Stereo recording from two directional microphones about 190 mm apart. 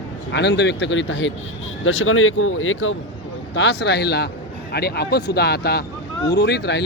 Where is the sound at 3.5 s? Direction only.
65° left (ahead or behind).